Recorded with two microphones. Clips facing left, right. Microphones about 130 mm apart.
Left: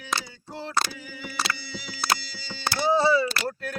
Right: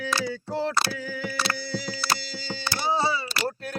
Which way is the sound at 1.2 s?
45° right (ahead or behind).